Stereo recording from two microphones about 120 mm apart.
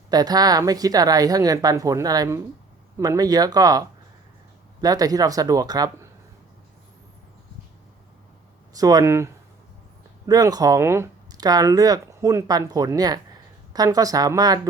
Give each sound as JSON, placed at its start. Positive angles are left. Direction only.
{"t": 0.1, "sound": "speech", "side_deg": -35}
{"t": 8.7, "sound": "speech", "side_deg": -30}